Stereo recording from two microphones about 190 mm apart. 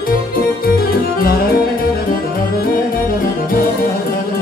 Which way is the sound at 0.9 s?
50° left (ahead or behind).